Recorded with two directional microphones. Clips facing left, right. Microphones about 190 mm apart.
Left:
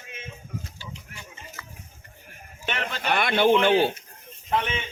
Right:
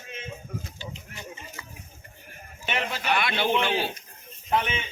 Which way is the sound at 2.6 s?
10° right (ahead or behind).